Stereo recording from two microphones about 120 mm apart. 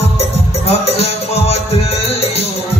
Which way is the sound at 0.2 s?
60° left (ahead or behind).